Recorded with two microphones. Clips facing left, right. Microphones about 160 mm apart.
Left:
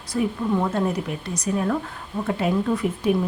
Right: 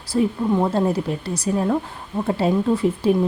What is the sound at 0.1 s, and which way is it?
Speech, 25° right (ahead or behind).